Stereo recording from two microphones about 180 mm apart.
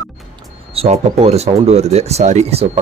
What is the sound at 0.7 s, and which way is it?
Speech, 35° right (ahead or behind).